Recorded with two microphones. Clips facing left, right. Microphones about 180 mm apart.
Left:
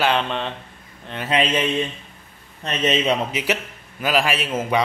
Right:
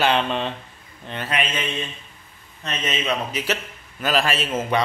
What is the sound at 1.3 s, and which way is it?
Speech, 30° left (ahead or behind).